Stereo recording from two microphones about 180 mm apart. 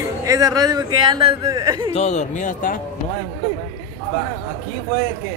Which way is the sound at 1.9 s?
40° left (ahead or behind).